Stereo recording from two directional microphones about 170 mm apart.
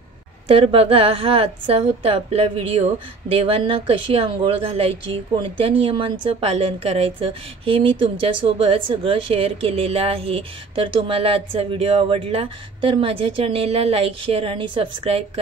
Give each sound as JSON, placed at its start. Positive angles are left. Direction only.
{"t": 0.5, "sound": "a woman's voice", "side_deg": -35}